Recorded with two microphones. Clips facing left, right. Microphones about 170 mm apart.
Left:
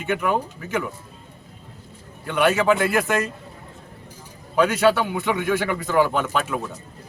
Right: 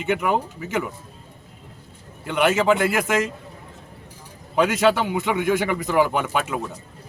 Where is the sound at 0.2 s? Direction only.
15° right (ahead or behind).